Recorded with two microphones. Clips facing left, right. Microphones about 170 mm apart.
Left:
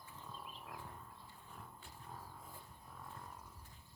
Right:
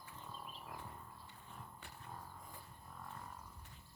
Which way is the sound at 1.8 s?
70° right (ahead or behind).